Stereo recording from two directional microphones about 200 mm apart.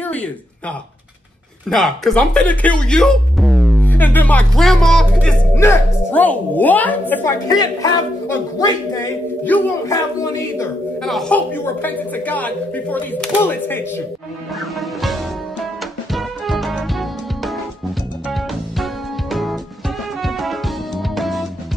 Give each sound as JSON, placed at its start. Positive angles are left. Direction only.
{"t": 0.0, "sound": "speech", "side_deg": 5}
{"t": 7.5, "sound": "speech", "side_deg": 20}
{"t": 11.0, "sound": "speech", "side_deg": 0}
{"t": 14.6, "sound": "music", "side_deg": 0}